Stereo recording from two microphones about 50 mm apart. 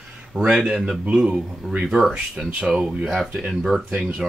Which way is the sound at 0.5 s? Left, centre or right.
Centre.